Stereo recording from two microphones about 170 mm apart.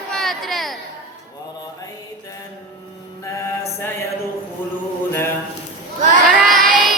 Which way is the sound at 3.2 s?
15° left (ahead or behind).